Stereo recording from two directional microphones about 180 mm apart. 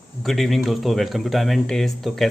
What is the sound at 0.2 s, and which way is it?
Speech, centre (ahead or behind).